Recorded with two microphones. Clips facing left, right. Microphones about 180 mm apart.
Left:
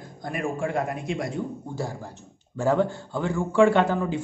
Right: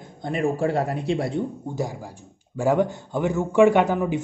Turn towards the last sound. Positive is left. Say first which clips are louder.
# right 2 dB
turn(degrees=-15)  # may be behind; listen again after turning